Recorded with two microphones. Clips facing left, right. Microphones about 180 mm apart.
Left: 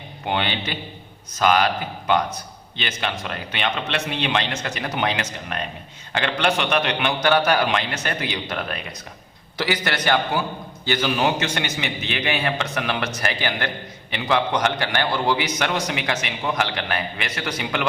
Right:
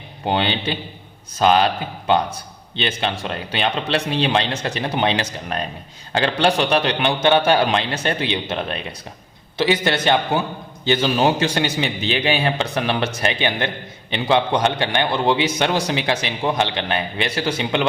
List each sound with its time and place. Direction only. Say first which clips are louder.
0.3 s a man's voice: right 4 dB; 30° right (ahead or behind)